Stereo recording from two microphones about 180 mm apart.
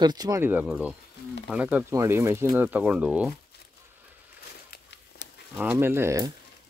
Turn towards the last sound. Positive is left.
turn(degrees=-15)  # may be behind; listen again after turning